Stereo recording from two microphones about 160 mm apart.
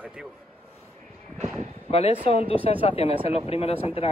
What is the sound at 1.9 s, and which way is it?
Speech, 40° left (ahead or behind).